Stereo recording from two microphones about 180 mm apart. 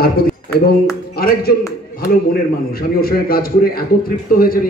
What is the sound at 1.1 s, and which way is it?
Speech, 55° left (ahead or behind).